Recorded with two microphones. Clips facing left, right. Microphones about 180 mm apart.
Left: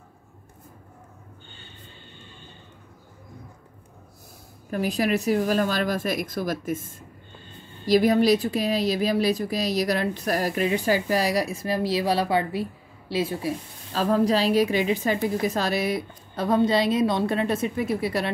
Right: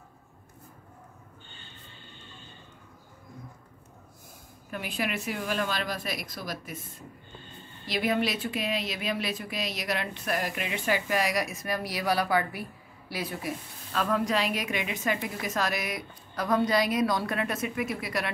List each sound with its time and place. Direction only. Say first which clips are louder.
4.6 s a woman's voice: left 9 dB; 40° left (ahead or behind)